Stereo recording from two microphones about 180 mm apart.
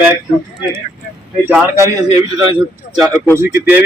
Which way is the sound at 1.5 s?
20° right (ahead or behind).